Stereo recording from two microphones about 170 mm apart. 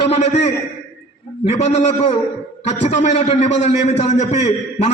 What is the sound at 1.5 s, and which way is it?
A man's voice, 40° left (ahead or behind).